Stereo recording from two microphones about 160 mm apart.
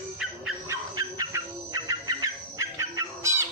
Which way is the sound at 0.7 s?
25° right (ahead or behind).